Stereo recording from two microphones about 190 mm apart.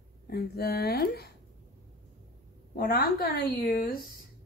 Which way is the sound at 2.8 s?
50° left (ahead or behind).